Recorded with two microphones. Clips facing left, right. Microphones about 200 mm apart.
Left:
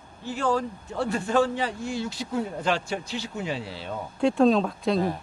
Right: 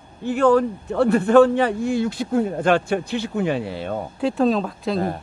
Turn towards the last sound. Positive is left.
turn(degrees=0)  # may be behind; listen again after turning